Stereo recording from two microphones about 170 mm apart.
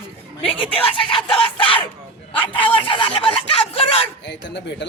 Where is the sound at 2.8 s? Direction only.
30° left (ahead or behind).